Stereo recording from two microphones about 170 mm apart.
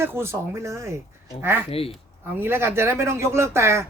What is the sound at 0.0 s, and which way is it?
Speech, 15° right (ahead or behind).